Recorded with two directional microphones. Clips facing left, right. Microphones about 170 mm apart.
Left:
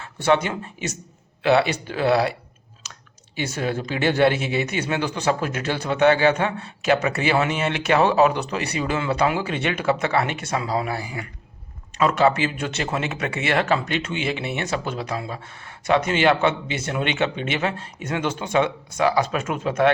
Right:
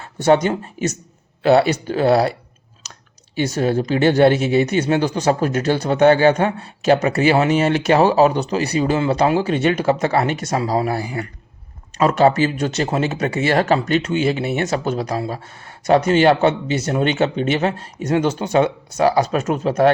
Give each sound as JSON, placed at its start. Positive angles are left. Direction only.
{"t": 0.0, "sound": "speech", "side_deg": -35}
{"t": 3.3, "sound": "speech", "side_deg": -40}